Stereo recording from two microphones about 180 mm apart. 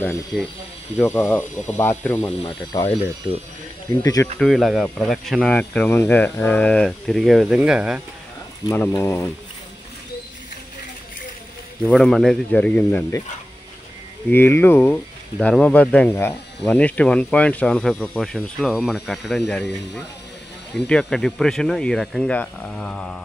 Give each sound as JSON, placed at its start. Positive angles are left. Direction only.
{"t": 0.3, "sound": "speech", "side_deg": -5}
{"t": 0.9, "sound": "speech", "side_deg": 10}
{"t": 2.4, "sound": "speech", "side_deg": 20}
{"t": 4.0, "sound": "speech", "side_deg": 20}
{"t": 4.4, "sound": "speech", "side_deg": 0}
{"t": 8.6, "sound": "speech", "side_deg": 15}
{"t": 11.8, "sound": "speech", "side_deg": 5}
{"t": 14.3, "sound": "speech", "side_deg": 10}
{"t": 20.7, "sound": "speech", "side_deg": 5}